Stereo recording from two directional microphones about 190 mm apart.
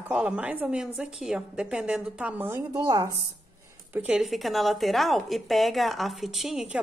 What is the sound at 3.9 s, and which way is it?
A woman's voice, 5° right (ahead or behind).